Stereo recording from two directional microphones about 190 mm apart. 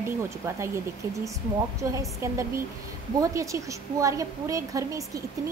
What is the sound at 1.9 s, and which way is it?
A woman's voice, 15° right (ahead or behind).